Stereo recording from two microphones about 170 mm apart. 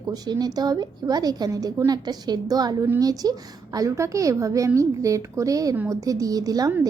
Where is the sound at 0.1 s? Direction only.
25° right (ahead or behind).